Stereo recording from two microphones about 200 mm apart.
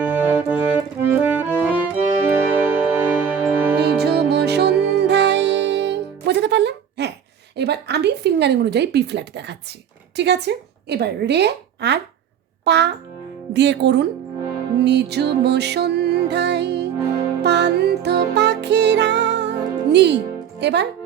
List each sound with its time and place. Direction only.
0.0 s music: 10° right (ahead or behind)
3.9 s music: 55° right (ahead or behind)
7.5 s a sound: 55° right (ahead or behind)
10.2 s a woman's voice: 60° right (ahead or behind)
14.8 s music: 55° right (ahead or behind)
20.6 s speech: 60° right (ahead or behind)